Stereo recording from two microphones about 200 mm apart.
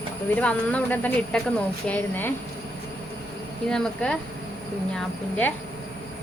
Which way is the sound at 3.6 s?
5° left (ahead or behind).